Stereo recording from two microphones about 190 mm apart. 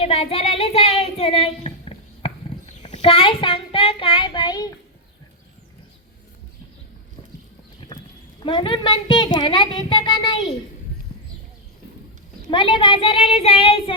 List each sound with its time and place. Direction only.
0.0 s child singing: 30° left (ahead or behind)
2.8 s speech: 35° left (ahead or behind)
8.4 s a child's voice: 25° left (ahead or behind)
12.5 s a child's voice: 25° left (ahead or behind)